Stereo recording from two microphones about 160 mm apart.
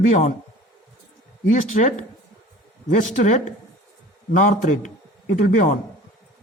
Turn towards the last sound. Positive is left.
turn(degrees=50)  # may be behind; listen again after turning